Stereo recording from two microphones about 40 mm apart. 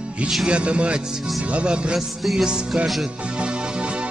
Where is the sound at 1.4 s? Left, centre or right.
Right.